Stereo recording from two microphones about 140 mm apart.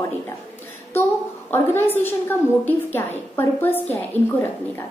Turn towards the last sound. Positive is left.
turn(degrees=15)  # may be behind; listen again after turning